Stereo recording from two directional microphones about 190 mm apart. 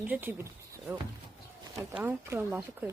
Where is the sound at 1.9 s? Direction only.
10° right (ahead or behind).